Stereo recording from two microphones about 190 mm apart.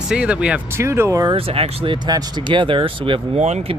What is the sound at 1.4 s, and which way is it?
Speech, 30° right (ahead or behind).